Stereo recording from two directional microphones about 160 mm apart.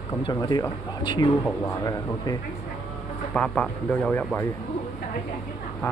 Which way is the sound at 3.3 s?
5° left (ahead or behind).